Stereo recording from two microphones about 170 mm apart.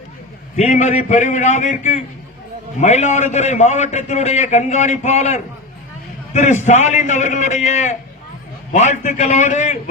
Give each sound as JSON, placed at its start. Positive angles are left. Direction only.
{"t": 0.5, "sound": "a man's voice", "side_deg": 45}